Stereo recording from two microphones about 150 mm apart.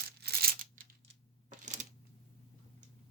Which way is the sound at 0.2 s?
90° right.